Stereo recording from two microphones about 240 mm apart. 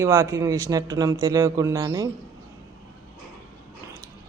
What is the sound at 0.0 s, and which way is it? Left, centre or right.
A woman's voice, centre.